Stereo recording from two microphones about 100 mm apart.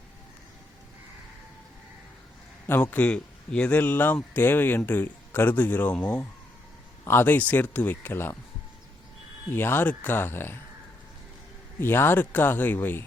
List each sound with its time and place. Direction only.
2.6 s a man's voice: 20° left (ahead or behind)
9.5 s a man's voice: 20° left (ahead or behind)
11.8 s a man's voice: 25° left (ahead or behind)